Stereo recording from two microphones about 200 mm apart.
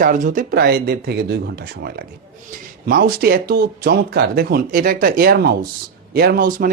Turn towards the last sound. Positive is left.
turn(degrees=-45)  # may be behind; listen again after turning